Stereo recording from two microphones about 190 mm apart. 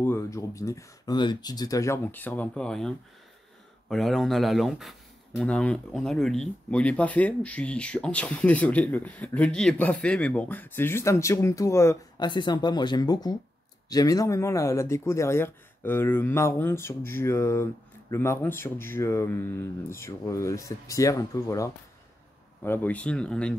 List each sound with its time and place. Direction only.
0.0 s speech: 15° left (ahead or behind)
3.9 s speech: centre (ahead or behind)